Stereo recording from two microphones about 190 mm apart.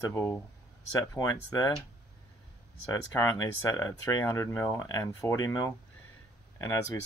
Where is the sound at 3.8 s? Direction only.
15° left (ahead or behind).